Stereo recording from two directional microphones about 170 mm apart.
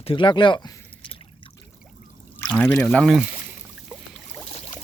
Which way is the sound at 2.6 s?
5° left (ahead or behind).